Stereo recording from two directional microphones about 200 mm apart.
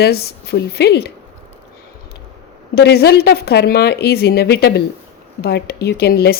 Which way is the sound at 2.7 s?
55° left (ahead or behind).